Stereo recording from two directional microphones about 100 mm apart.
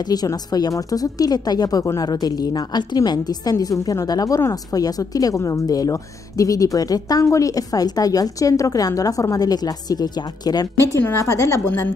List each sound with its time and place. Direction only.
0.1 s speech: 40° left (ahead or behind)
11.1 s a woman's voice: 30° left (ahead or behind)